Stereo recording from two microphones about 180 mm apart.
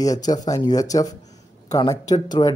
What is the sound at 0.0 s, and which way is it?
Speech, 20° left (ahead or behind).